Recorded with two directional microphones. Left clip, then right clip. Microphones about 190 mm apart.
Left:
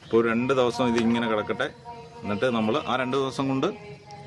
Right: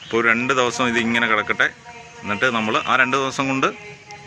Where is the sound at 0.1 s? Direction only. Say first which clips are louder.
Right 5 dB; 15° left (ahead or behind).